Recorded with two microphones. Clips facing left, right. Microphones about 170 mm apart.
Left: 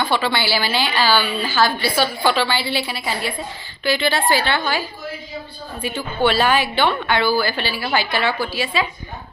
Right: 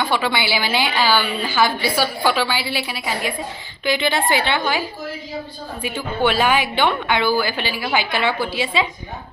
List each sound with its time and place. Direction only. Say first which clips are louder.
0.0 s a woman's voice: even; 15° right (ahead or behind)